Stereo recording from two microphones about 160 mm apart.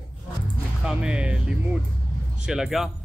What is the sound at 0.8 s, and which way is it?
Speech, 5° right (ahead or behind).